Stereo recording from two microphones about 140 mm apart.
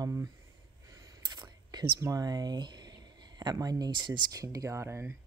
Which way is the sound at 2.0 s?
25° right (ahead or behind).